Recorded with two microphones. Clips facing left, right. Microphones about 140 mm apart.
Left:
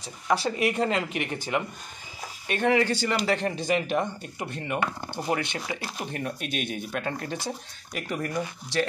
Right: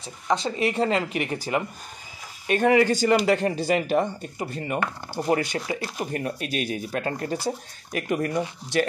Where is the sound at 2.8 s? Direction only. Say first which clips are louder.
Right 6 dB; 45° right (ahead or behind).